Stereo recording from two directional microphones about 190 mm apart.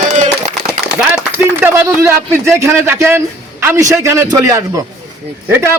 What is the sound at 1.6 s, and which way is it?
A man's voice, 10° right (ahead or behind).